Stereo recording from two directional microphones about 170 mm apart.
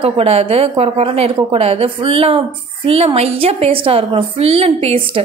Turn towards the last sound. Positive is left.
turn(degrees=-35)  # may be behind; listen again after turning